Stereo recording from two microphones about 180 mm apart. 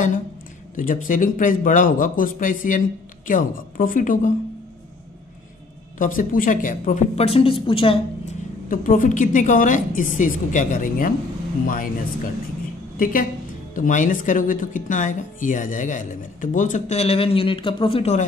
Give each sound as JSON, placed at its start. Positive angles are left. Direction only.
{"t": 0.7, "sound": "speech", "side_deg": 45}
{"t": 5.9, "sound": "a woman's voice", "side_deg": 50}
{"t": 8.6, "sound": "speech", "side_deg": 50}
{"t": 13.0, "sound": "speech", "side_deg": 50}